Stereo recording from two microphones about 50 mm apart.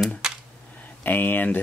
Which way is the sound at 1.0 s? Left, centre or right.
Left.